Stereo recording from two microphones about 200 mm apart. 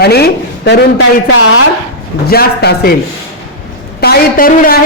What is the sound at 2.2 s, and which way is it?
Speech, 50° left (ahead or behind).